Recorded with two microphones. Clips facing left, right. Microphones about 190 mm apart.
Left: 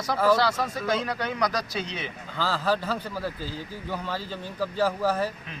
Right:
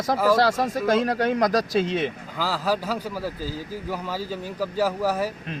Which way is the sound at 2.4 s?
10° right (ahead or behind).